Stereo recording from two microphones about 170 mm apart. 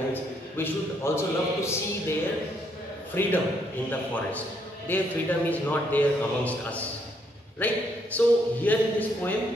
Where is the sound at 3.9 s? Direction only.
10° left (ahead or behind).